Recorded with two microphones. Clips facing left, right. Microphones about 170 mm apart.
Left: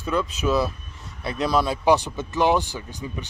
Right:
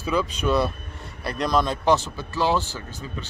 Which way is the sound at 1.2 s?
Centre (ahead or behind).